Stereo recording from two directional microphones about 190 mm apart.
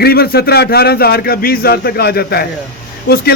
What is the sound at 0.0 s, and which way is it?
Speech, 55° left (ahead or behind).